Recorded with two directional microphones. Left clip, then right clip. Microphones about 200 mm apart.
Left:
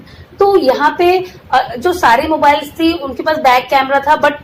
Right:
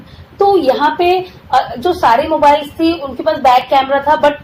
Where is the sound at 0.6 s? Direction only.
25° left (ahead or behind).